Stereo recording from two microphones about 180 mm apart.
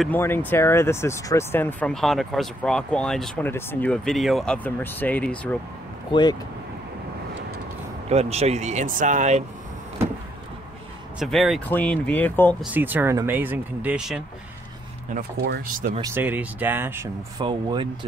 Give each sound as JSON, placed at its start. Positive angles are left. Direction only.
{"t": 0.0, "sound": "speech", "side_deg": 10}
{"t": 6.1, "sound": "speech", "side_deg": 25}
{"t": 8.1, "sound": "speech", "side_deg": -35}
{"t": 11.1, "sound": "speech", "side_deg": 0}
{"t": 12.7, "sound": "speech", "side_deg": -10}
{"t": 15.1, "sound": "speech", "side_deg": -60}
{"t": 16.2, "sound": "speech", "side_deg": -10}
{"t": 17.4, "sound": "speech", "side_deg": -25}